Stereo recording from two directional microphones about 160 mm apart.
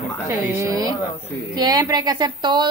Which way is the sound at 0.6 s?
20° right (ahead or behind).